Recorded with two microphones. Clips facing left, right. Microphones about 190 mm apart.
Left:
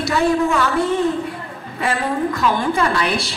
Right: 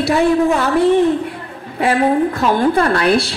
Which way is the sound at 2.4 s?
45° right (ahead or behind).